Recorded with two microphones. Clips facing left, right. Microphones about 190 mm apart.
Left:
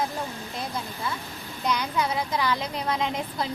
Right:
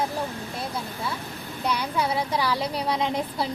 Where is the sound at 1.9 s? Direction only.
30° right (ahead or behind).